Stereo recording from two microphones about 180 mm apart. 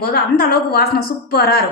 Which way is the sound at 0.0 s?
60° left (ahead or behind).